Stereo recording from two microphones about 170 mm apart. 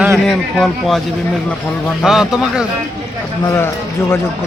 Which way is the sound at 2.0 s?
5° right (ahead or behind).